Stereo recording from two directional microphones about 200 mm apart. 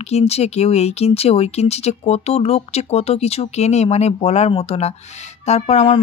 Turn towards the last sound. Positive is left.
turn(degrees=30)  # may be behind; listen again after turning